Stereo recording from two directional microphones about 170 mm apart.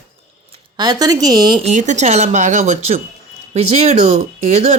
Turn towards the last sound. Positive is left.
turn(degrees=-40)  # may be behind; listen again after turning